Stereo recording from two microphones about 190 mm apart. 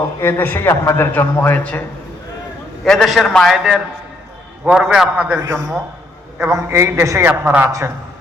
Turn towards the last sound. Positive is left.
turn(degrees=-15)  # may be behind; listen again after turning